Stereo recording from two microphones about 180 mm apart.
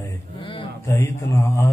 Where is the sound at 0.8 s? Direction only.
15° left (ahead or behind).